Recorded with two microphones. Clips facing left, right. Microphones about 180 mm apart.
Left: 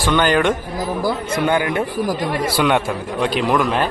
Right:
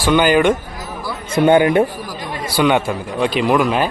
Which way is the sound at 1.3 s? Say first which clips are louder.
Right 9 dB; 25° right (ahead or behind).